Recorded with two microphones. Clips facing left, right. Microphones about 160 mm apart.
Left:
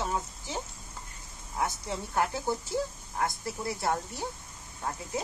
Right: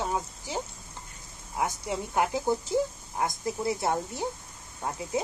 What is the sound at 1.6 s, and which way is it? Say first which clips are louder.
Speech: right 2 dB; 15° right (ahead or behind).